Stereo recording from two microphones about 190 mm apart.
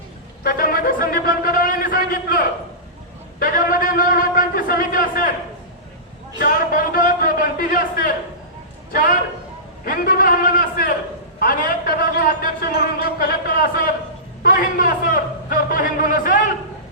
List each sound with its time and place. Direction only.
0.4 s a sound: 50° left (ahead or behind)
3.4 s a man's voice: 45° left (ahead or behind)
6.4 s a man's voice: 50° left (ahead or behind)
11.9 s speech: 50° left (ahead or behind)